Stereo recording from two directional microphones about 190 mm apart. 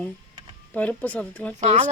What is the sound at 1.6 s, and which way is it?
Speech, 35° right (ahead or behind).